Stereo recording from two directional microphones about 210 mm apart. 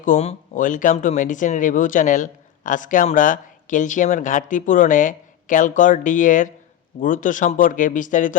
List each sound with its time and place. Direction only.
0.0 s speech: 35° left (ahead or behind)